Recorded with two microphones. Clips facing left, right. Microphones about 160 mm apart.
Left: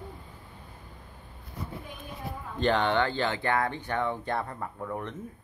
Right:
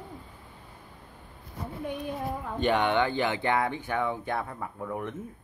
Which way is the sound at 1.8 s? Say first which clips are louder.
Right 10 dB; 70° right (ahead or behind).